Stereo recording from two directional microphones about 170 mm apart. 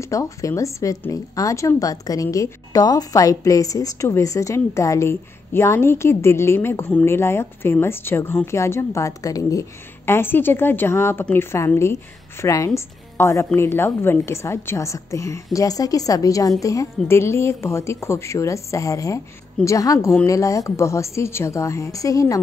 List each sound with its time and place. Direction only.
0.0 s a woman's voice: 20° left (ahead or behind)